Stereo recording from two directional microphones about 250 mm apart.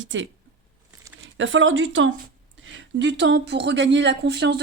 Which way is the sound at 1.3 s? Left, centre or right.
Right.